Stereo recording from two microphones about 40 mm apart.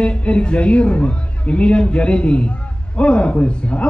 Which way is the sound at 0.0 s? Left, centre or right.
Left.